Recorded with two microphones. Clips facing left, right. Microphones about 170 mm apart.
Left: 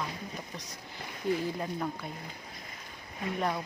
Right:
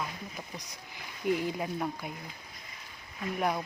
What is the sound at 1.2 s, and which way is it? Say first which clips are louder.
Speech: right 1 dB; 15° right (ahead or behind).